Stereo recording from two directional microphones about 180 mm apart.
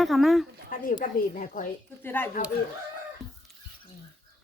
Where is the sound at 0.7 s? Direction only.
50° left (ahead or behind).